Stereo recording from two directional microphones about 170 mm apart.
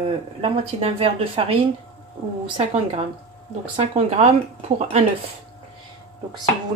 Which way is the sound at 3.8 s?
40° right (ahead or behind).